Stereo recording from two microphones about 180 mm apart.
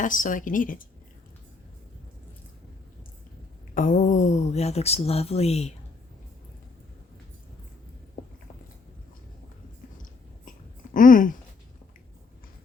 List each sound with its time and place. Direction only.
0.0 s a woman's voice: 45° left (ahead or behind)
3.8 s speech: 45° left (ahead or behind)
10.9 s a woman's voice: 50° left (ahead or behind)